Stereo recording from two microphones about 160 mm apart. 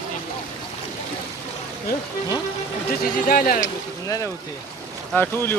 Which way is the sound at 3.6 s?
20° left (ahead or behind).